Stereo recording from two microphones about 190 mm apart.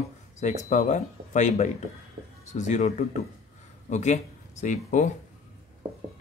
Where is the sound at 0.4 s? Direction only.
40° left (ahead or behind).